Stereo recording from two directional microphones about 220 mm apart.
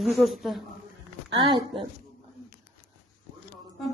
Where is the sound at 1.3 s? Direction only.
20° right (ahead or behind).